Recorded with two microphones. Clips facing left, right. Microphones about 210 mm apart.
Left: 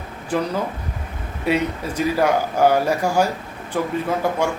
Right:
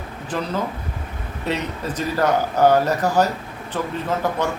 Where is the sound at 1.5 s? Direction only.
10° left (ahead or behind).